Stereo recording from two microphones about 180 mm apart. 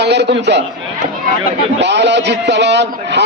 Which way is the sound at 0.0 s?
70° right (ahead or behind).